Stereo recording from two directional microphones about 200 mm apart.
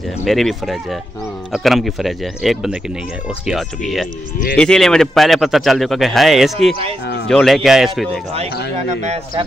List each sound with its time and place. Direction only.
0.2 s a man's voice: centre (ahead or behind)
4.6 s a man's voice: 5° left (ahead or behind)
8.7 s speech: 30° right (ahead or behind)